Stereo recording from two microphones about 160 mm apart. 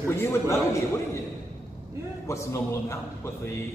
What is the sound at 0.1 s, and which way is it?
Speech, 15° left (ahead or behind).